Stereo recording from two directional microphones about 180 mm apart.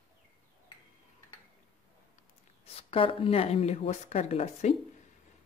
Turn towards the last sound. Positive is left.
turn(degrees=40)  # may be behind; listen again after turning